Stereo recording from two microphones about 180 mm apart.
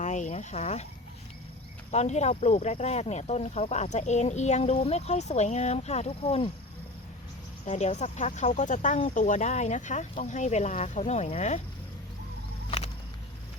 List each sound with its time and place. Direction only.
0.0 s a sound: 40° left (ahead or behind)
1.9 s speech: 40° left (ahead or behind)
7.6 s speech: 40° left (ahead or behind)